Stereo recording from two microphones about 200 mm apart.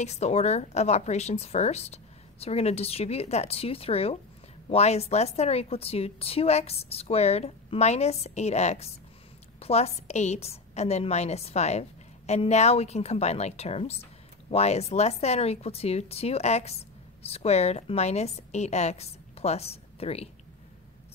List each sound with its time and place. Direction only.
0.0 s a woman's voice: 35° left (ahead or behind)